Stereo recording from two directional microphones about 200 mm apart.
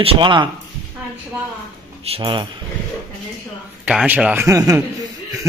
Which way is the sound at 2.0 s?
25° right (ahead or behind).